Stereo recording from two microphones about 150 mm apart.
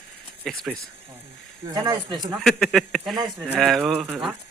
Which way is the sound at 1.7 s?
30° right (ahead or behind).